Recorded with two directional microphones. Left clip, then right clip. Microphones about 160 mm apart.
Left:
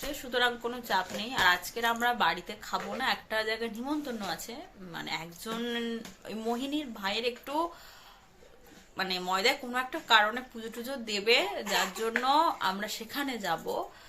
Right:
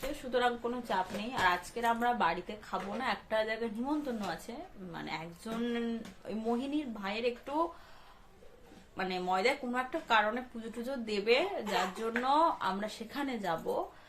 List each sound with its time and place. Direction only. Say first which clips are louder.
0.3 s a woman's voice: left 2 dB; 10° left (ahead or behind)
9.0 s a woman's voice: left 2 dB; 5° left (ahead or behind)